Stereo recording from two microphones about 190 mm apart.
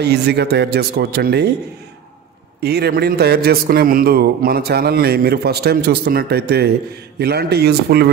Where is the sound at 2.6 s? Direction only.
55° right (ahead or behind).